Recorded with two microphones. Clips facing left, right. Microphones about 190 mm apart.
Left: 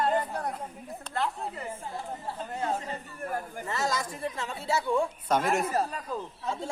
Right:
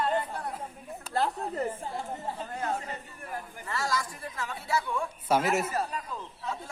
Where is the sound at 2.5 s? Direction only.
25° left (ahead or behind).